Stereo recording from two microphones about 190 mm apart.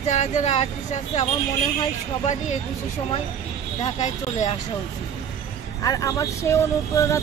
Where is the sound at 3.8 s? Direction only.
35° left (ahead or behind).